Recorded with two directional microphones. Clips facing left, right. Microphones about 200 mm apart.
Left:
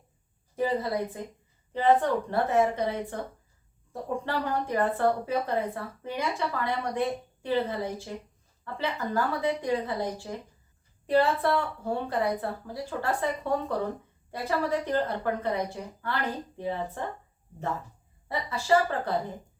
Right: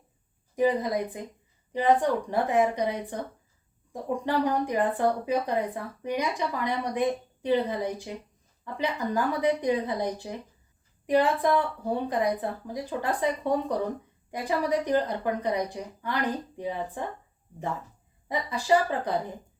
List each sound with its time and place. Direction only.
0.5 s speech: 15° right (ahead or behind)
18.3 s speech: 15° right (ahead or behind)